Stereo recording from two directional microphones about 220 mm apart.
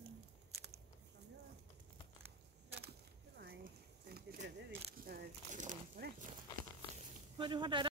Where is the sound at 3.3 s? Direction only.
45° right (ahead or behind).